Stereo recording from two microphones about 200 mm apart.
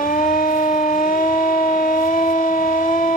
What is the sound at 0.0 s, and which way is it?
Siren, 45° left (ahead or behind).